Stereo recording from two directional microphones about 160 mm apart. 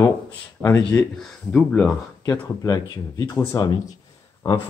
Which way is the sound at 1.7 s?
20° left (ahead or behind).